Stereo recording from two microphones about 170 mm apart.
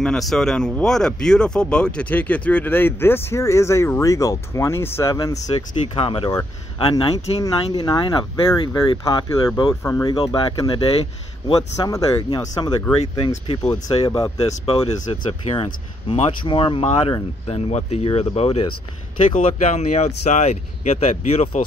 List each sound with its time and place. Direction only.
0.0 s speech: centre (ahead or behind); by 5.4 s 20° left (ahead or behind)
5.9 s speech: 30° left (ahead or behind)
11.9 s speech: 20° left (ahead or behind)
14.4 s speech: 40° left (ahead or behind)